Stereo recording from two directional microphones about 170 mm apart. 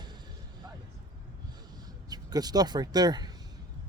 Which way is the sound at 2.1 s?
25° right (ahead or behind).